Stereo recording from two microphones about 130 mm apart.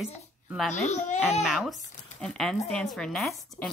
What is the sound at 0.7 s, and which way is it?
Speech, 65° left (ahead or behind).